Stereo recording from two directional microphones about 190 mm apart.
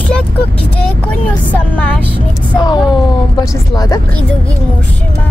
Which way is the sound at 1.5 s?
5° left (ahead or behind).